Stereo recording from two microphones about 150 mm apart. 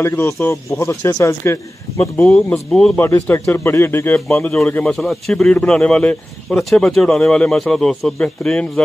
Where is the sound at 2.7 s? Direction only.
5° left (ahead or behind).